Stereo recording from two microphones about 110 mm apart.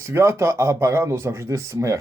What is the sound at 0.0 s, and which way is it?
Speech, 25° right (ahead or behind).